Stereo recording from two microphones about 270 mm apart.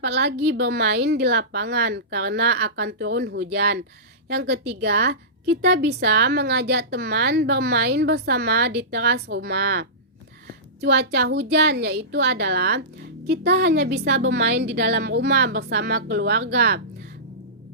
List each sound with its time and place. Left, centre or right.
0.0 s a woman's voice: right